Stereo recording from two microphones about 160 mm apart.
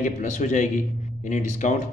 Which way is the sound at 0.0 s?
50° left (ahead or behind).